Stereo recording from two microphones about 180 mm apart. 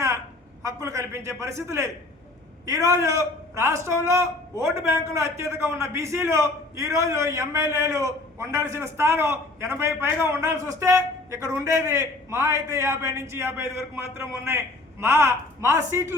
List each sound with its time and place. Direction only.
0.6 s a man's voice: 15° right (ahead or behind)